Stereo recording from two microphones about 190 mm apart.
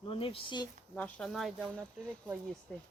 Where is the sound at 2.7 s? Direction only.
10° left (ahead or behind).